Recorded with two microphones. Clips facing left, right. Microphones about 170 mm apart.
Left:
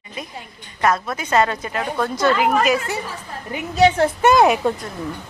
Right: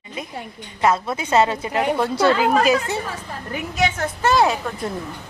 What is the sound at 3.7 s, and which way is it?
Speech, 35° left (ahead or behind).